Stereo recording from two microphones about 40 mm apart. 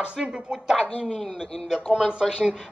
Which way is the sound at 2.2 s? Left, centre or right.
Centre.